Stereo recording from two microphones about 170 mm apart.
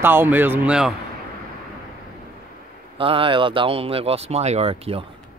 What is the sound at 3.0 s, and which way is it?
Speech, 30° right (ahead or behind).